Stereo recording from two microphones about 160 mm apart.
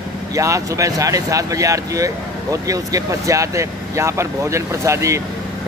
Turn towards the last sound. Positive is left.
turn(degrees=-20)  # may be behind; listen again after turning